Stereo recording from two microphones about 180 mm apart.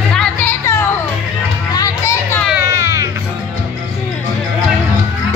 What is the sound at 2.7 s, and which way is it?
Music, 15° right (ahead or behind).